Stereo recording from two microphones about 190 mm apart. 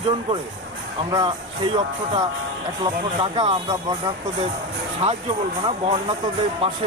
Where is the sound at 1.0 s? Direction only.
25° right (ahead or behind).